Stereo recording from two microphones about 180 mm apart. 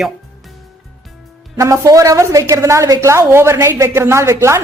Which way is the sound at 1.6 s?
15° right (ahead or behind).